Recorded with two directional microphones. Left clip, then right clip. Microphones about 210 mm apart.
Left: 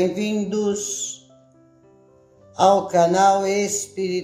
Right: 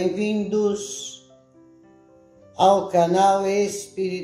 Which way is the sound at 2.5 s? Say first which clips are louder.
Left 1 dB; 20° left (ahead or behind).